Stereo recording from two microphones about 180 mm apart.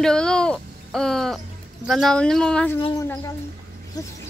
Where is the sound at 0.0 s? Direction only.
5° left (ahead or behind).